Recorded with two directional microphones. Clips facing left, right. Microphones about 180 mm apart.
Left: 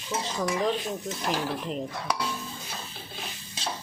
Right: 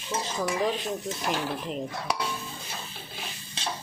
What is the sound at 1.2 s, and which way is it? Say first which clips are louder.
Speech: left 2 dB; centre (ahead or behind).